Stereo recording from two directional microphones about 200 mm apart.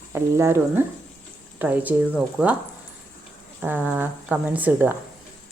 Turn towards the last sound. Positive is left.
turn(degrees=-10)  # may be behind; listen again after turning